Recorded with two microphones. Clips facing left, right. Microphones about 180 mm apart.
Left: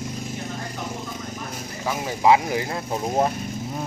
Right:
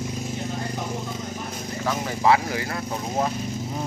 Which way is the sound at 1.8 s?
10° left (ahead or behind).